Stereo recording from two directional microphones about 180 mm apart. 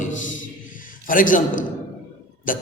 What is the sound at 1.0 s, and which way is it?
A man's voice, 50° left (ahead or behind).